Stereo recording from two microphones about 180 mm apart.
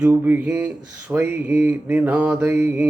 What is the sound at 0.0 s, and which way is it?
Speech, 10° right (ahead or behind).